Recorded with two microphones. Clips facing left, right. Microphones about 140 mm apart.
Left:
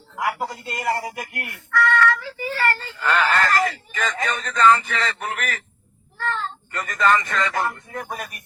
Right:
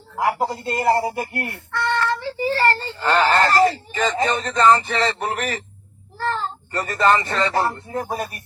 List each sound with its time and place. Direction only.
0.2 s speech: 35° right (ahead or behind)